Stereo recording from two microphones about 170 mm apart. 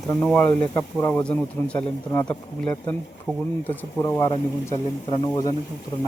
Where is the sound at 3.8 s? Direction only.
15° left (ahead or behind).